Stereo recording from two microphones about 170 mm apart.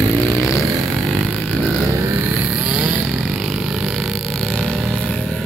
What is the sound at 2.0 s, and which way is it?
Vehicle, 10° right (ahead or behind).